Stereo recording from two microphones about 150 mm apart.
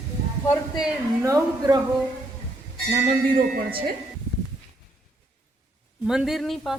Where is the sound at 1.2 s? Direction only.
25° right (ahead or behind).